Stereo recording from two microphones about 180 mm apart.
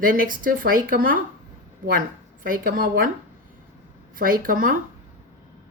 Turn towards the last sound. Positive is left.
turn(degrees=-50)  # may be behind; listen again after turning